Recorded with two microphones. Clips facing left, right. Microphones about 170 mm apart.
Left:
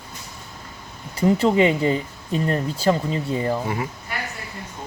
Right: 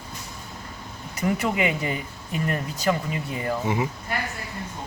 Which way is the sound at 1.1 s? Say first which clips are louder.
Left 7 dB; 30° left (ahead or behind).